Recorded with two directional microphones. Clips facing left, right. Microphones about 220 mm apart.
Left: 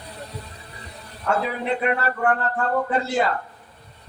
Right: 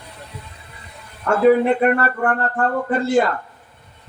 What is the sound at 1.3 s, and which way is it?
Speech, 50° right (ahead or behind).